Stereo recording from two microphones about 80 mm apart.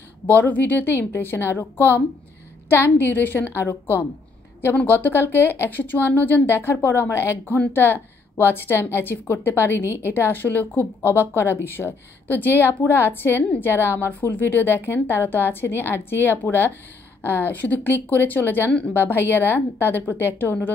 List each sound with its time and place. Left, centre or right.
0.3 s a woman's voice: left